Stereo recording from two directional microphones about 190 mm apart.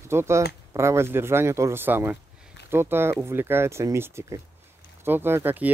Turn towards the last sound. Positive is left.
turn(degrees=-10)  # may be behind; listen again after turning